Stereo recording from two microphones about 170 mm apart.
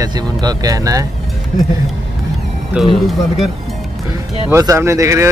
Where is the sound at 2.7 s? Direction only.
Centre (ahead or behind).